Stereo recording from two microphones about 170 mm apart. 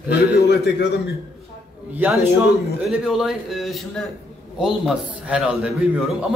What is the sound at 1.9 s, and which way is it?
A man's voice, 10° right (ahead or behind).